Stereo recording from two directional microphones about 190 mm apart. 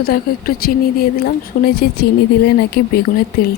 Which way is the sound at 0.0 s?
50° left (ahead or behind).